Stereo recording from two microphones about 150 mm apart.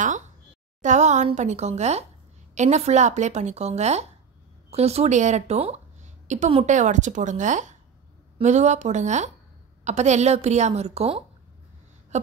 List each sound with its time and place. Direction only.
0.8 s speech: 50° right (ahead or behind)